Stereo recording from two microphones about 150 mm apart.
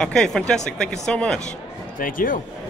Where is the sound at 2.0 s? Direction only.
65° left (ahead or behind).